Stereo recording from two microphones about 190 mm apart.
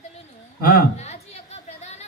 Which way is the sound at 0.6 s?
50° left (ahead or behind).